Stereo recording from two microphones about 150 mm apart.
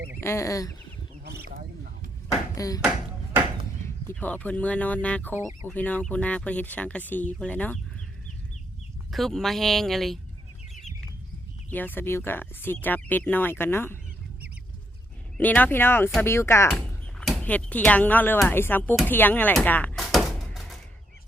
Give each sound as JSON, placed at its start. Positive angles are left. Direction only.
{"t": 0.2, "sound": "speech", "side_deg": 20}
{"t": 2.6, "sound": "speech", "side_deg": 25}
{"t": 3.8, "sound": "speech", "side_deg": 10}
{"t": 9.0, "sound": "speech", "side_deg": 0}
{"t": 11.7, "sound": "speech", "side_deg": 15}
{"t": 15.4, "sound": "speech", "side_deg": 10}
{"t": 16.6, "sound": "speech", "side_deg": 5}
{"t": 20.0, "sound": "a sound", "side_deg": 0}